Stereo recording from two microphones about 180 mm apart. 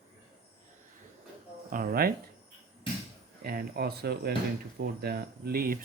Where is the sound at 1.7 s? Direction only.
55° right (ahead or behind).